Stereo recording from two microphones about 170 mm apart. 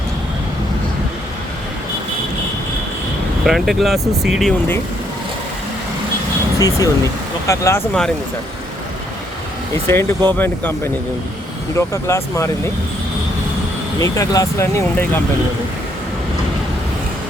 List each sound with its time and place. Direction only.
3.4 s speech: centre (ahead or behind)
6.6 s speech: 20° left (ahead or behind)
9.8 s speech: 15° left (ahead or behind)
11.8 s speech: 15° left (ahead or behind)
14.0 s speech: 20° left (ahead or behind)